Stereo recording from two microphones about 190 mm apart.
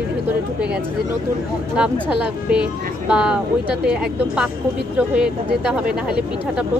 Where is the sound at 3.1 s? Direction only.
5° right (ahead or behind).